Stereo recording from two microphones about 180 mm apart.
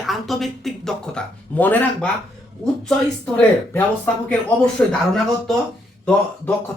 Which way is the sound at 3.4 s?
5° left (ahead or behind).